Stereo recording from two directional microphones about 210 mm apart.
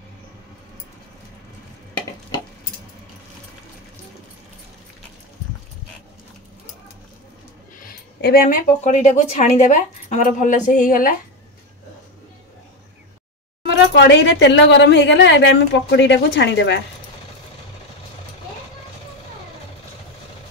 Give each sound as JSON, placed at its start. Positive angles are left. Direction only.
{"t": 7.8, "sound": "a woman's voice", "side_deg": 45}
{"t": 13.7, "sound": "speech", "side_deg": 55}